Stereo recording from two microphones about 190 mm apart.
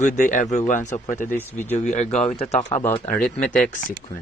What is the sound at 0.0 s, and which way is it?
Speech, 40° left (ahead or behind).